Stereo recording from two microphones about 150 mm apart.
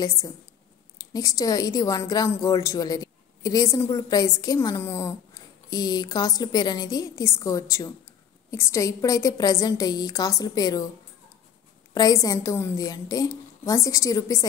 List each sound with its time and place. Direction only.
1.1 s a woman's voice: 25° left (ahead or behind)
11.9 s a woman's voice: 25° left (ahead or behind)